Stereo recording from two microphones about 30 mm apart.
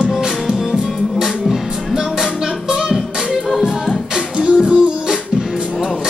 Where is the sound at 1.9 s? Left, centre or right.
Centre.